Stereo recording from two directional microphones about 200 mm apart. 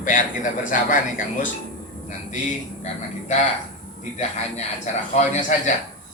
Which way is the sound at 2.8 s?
35° left (ahead or behind).